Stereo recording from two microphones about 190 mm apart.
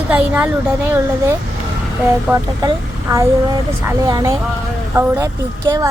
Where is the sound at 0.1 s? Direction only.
5° right (ahead or behind).